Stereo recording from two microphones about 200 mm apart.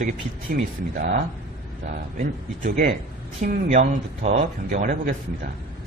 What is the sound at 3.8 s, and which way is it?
A man's voice, 30° right (ahead or behind).